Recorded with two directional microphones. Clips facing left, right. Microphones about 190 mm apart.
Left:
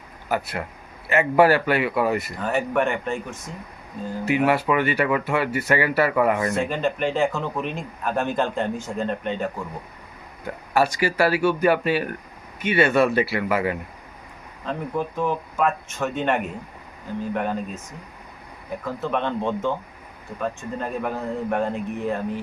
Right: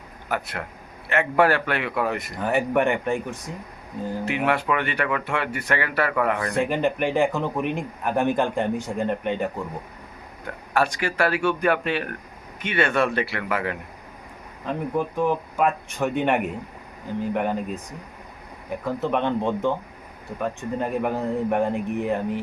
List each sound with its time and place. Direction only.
0.3 s speech: 5° left (ahead or behind)
2.3 s speech: 15° right (ahead or behind)
4.3 s speech: 5° left (ahead or behind)
6.5 s speech: 15° right (ahead or behind)
10.8 s speech: 5° left (ahead or behind)
14.6 s speech: 15° right (ahead or behind)
18.9 s speech: 15° right (ahead or behind)